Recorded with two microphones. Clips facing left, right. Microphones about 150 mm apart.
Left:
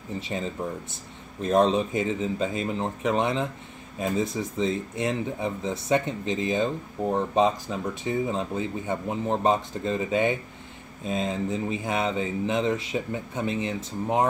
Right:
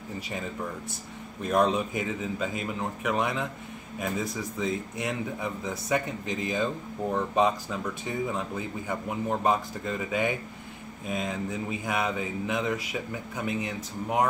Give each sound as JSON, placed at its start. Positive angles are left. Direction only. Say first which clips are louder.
{"t": 1.4, "sound": "speech", "louder": "left 3 dB", "side_deg": 25}